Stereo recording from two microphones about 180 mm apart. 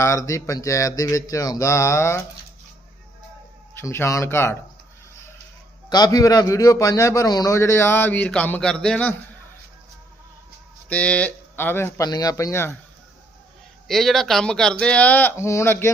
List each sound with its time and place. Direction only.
0.0 s a man's voice: 15° left (ahead or behind)
3.8 s a man's voice: 15° left (ahead or behind)
5.9 s a man's voice: 20° left (ahead or behind)
10.8 s a man's voice: 10° left (ahead or behind)
13.8 s speech: centre (ahead or behind)